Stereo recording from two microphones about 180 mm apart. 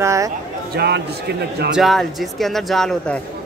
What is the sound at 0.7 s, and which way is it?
Speech, 65° right (ahead or behind).